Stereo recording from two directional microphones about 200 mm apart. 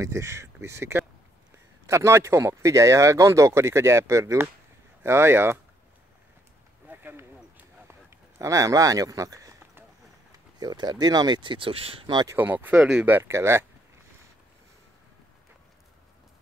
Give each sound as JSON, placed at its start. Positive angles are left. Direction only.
{"t": 0.0, "sound": "speech", "side_deg": -15}
{"t": 6.9, "sound": "a sound", "side_deg": -10}
{"t": 10.6, "sound": "speech", "side_deg": -20}
{"t": 12.4, "sound": "speech", "side_deg": -10}